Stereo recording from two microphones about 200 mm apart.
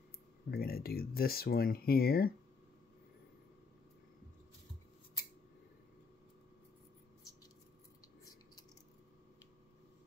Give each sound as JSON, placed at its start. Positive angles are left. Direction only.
{"t": 0.5, "sound": "speech", "side_deg": 50}